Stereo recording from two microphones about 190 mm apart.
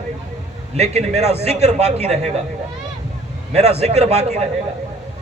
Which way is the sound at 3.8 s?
35° right (ahead or behind).